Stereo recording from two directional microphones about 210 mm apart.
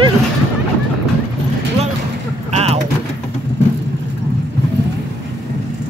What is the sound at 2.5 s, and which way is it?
Vehicle, 30° right (ahead or behind).